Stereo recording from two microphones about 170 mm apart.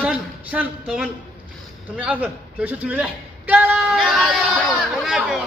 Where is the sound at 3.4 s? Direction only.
10° right (ahead or behind).